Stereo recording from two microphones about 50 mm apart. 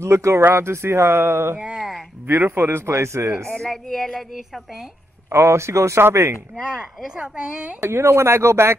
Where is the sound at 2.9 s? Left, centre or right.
Right.